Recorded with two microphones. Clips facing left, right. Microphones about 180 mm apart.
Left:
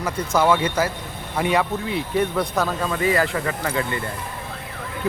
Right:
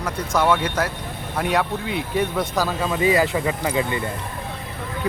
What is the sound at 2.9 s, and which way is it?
Speech, 15° right (ahead or behind).